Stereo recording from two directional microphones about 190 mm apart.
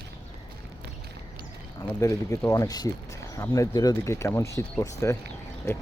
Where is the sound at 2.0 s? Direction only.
15° left (ahead or behind).